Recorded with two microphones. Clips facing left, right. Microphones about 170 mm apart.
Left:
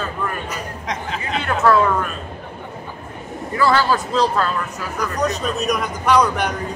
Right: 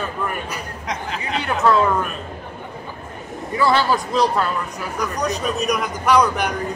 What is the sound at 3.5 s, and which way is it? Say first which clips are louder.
Speech: left 1 dB; 15° right (ahead or behind).